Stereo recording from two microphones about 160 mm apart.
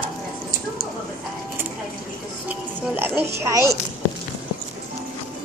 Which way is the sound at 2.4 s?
10° right (ahead or behind).